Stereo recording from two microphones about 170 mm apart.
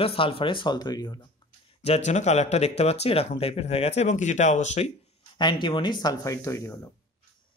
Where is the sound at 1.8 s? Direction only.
40° left (ahead or behind).